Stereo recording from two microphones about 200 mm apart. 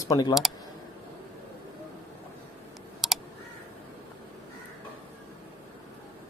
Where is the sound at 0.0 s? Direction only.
15° left (ahead or behind).